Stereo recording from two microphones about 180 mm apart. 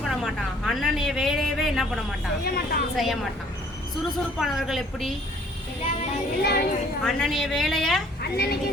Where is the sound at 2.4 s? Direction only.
60° left (ahead or behind).